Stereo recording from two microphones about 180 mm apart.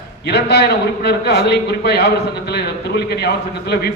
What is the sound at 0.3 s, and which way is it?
A man's voice, 70° left (ahead or behind).